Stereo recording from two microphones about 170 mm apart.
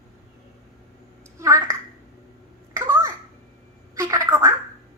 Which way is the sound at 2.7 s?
15° right (ahead or behind).